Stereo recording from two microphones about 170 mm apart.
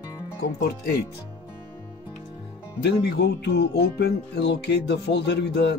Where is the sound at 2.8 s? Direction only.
85° left.